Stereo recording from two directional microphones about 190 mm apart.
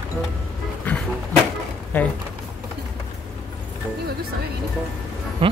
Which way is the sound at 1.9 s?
10° left (ahead or behind).